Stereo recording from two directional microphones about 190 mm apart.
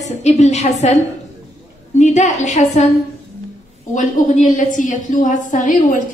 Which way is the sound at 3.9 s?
40° left (ahead or behind).